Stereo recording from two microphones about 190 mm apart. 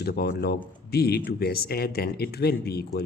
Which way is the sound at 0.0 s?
55° left (ahead or behind).